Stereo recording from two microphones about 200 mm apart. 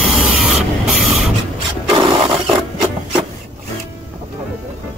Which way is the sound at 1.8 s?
25° right (ahead or behind).